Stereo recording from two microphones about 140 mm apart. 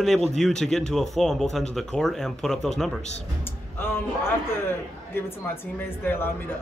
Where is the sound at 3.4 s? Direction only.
15° left (ahead or behind).